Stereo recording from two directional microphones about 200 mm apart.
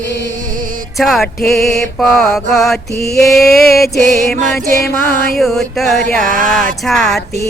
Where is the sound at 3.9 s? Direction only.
40° right (ahead or behind).